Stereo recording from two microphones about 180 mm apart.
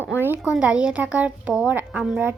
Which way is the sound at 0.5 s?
5° right (ahead or behind).